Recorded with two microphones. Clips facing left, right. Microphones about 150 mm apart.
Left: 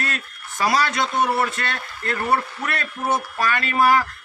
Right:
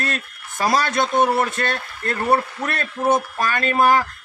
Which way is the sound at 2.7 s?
25° right (ahead or behind).